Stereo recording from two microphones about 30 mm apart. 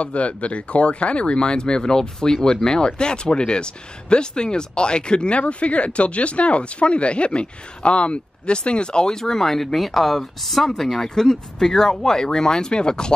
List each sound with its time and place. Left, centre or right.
0.0 s speech: left
9.1 s speech: centre
10.8 s speech: centre